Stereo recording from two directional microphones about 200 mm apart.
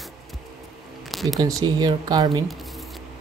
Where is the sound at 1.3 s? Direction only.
20° right (ahead or behind).